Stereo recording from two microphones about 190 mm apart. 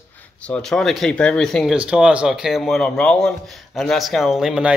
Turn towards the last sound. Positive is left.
turn(degrees=-5)  # may be behind; listen again after turning